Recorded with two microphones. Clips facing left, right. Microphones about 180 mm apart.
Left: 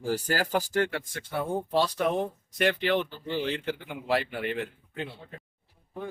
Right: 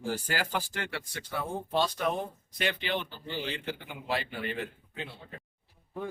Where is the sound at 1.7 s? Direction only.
65° left (ahead or behind).